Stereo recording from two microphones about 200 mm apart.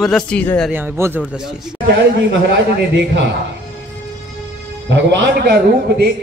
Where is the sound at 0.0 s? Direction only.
5° left (ahead or behind).